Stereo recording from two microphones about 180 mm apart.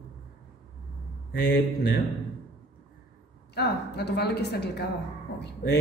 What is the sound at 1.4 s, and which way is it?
Speech, 60° left (ahead or behind).